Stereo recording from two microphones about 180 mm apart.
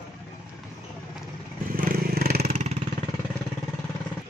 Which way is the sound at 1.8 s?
55° right (ahead or behind).